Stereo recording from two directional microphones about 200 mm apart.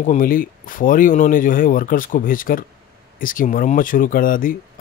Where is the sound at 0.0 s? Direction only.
40° left (ahead or behind).